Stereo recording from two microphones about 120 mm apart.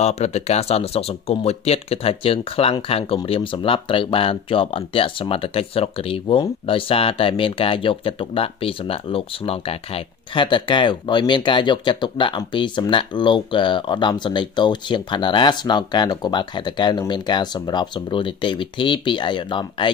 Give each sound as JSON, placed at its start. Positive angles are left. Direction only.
{"t": 0.0, "sound": "speech", "side_deg": 65}